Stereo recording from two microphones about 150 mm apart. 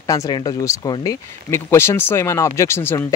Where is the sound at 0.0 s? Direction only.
25° left (ahead or behind).